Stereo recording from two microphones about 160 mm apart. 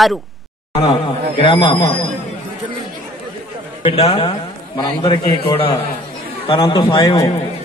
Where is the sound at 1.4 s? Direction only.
30° left (ahead or behind).